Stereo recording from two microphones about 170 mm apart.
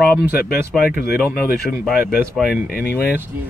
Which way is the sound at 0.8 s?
60° left (ahead or behind).